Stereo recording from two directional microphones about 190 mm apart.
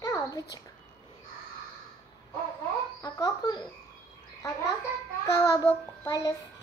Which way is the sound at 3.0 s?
20° left (ahead or behind).